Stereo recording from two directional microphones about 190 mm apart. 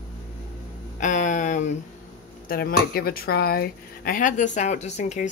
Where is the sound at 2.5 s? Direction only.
50° left (ahead or behind).